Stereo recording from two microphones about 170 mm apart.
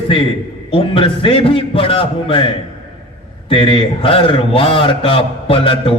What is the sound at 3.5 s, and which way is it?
A man's voice, 30° left (ahead or behind).